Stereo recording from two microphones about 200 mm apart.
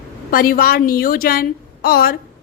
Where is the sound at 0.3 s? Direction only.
45° left (ahead or behind).